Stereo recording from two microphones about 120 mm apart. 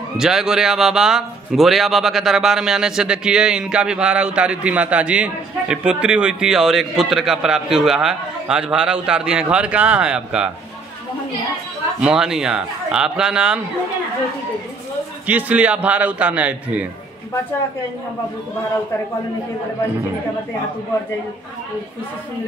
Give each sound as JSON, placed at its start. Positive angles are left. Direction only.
{"t": 0.2, "sound": "a man's voice", "side_deg": -5}
{"t": 12.0, "sound": "a man's voice", "side_deg": -5}
{"t": 15.2, "sound": "a man's voice", "side_deg": -15}